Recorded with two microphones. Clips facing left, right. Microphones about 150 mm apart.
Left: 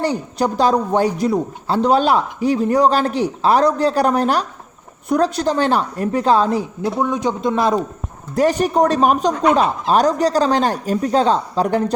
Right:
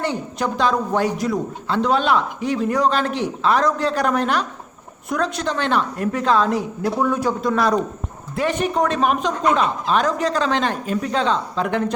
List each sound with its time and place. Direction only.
0.0 s a man's voice: 35° left (ahead or behind)
6.8 s a man's voice: 20° left (ahead or behind)
8.4 s a man's voice: 40° left (ahead or behind)